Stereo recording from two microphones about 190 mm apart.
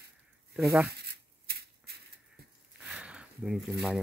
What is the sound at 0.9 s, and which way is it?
Shuffling cards, 60° right (ahead or behind).